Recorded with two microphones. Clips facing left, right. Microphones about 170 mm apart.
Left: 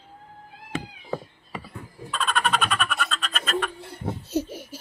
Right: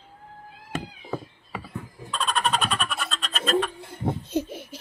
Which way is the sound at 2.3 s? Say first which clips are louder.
Even; 35° right (ahead or behind).